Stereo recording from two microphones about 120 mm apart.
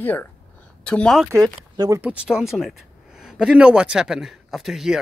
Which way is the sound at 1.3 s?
30° right (ahead or behind).